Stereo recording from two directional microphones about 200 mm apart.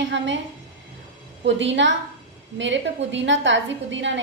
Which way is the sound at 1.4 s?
65° right (ahead or behind).